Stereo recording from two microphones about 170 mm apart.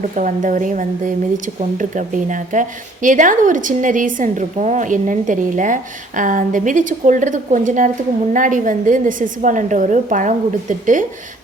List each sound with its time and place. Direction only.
0.2 s speech: 50° right (ahead or behind)